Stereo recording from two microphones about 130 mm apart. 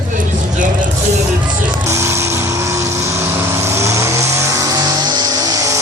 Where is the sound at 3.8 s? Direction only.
25° right (ahead or behind).